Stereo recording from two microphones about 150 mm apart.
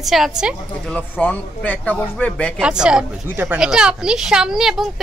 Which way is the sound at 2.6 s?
5° right (ahead or behind).